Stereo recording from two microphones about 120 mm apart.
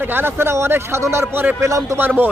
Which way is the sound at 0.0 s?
15° right (ahead or behind).